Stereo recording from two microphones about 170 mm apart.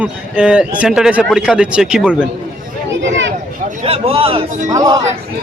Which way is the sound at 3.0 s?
90° right.